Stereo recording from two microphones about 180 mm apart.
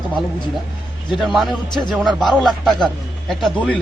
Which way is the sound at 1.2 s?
Centre (ahead or behind).